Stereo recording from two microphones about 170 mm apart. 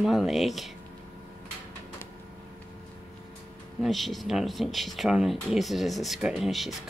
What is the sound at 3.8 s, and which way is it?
Speech, centre (ahead or behind).